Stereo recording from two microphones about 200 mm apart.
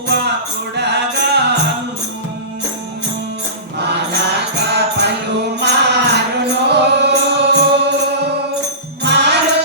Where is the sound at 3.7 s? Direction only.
55° right (ahead or behind).